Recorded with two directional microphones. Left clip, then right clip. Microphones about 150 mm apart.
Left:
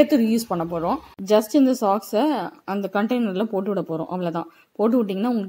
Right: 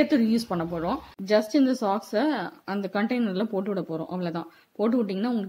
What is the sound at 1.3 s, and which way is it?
A woman's voice, 25° left (ahead or behind).